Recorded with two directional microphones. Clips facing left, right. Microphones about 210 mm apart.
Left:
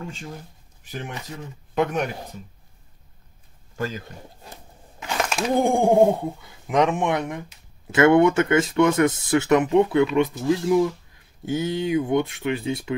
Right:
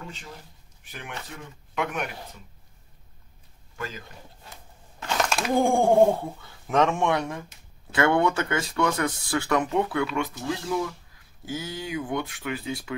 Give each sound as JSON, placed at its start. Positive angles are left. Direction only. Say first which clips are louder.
{"t": 1.8, "sound": "a man's voice", "louder": "left 7 dB", "side_deg": 35}
{"t": 3.7, "sound": "speech", "louder": "left 7 dB", "side_deg": 40}
{"t": 5.0, "sound": "speech", "louder": "left 2 dB", "side_deg": 10}